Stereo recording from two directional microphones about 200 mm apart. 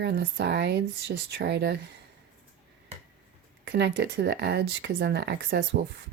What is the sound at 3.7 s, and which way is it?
Speech, 55° right (ahead or behind).